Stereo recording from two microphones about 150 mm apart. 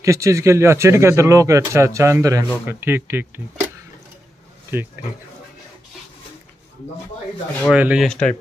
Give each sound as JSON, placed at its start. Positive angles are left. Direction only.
{"t": 0.0, "sound": "speech", "side_deg": -20}
{"t": 7.7, "sound": "speech", "side_deg": -5}
{"t": 8.1, "sound": "speech", "side_deg": 5}